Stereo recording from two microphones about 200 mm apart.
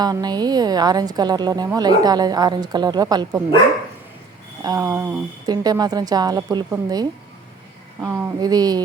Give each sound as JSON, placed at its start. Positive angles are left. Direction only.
{"t": 0.0, "sound": "a woman's voice", "side_deg": -20}
{"t": 4.6, "sound": "a woman's voice", "side_deg": -15}